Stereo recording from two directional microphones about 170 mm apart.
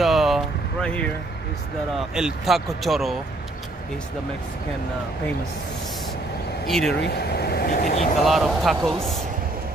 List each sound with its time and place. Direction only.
0.0 s vehicle: centre (ahead or behind)
0.8 s speech: 5° left (ahead or behind)
2.1 s speech: 5° right (ahead or behind)
6.7 s speech: 5° left (ahead or behind)
7.0 s speech: 70° left (ahead or behind)
8.2 s speech: centre (ahead or behind)